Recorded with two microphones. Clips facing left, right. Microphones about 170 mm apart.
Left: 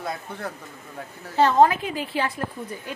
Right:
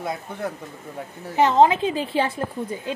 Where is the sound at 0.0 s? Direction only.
20° right (ahead or behind).